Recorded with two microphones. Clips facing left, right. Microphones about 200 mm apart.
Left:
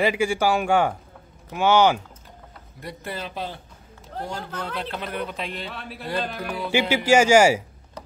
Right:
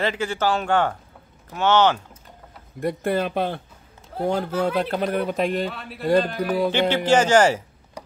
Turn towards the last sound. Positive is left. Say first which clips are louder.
# left 1 dB
turn(degrees=10)  # may be behind; listen again after turning